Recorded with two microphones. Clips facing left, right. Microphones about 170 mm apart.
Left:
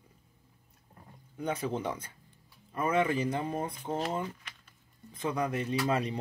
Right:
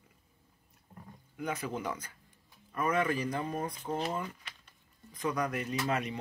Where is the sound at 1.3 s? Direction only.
30° left (ahead or behind).